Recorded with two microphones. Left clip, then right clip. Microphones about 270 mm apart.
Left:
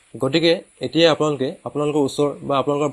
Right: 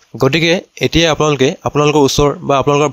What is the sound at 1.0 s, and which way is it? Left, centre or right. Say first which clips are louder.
A man's voice: right 3 dB; right.